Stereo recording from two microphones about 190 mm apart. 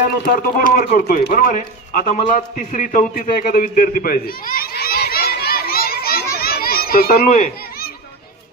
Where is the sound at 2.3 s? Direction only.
40° left (ahead or behind).